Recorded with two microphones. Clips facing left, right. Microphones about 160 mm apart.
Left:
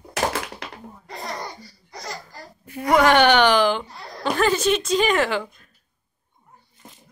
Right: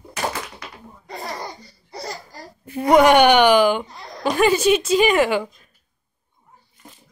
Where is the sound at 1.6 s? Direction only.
25° right (ahead or behind); by 3.8 s 10° right (ahead or behind).